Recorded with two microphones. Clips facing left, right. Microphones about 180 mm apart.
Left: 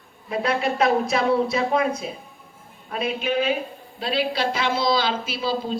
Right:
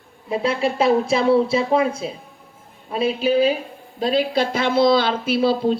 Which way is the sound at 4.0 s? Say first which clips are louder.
Right 5 dB; 45° right (ahead or behind).